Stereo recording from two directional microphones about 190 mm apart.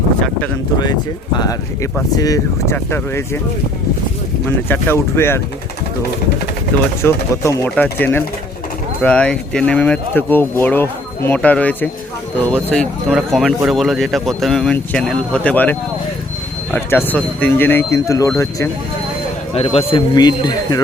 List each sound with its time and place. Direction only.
1.4 s speech: 20° left (ahead or behind)
4.4 s speech: 10° left (ahead or behind)
7.0 s speech: 10° left (ahead or behind)
19.5 s speech: 30° left (ahead or behind)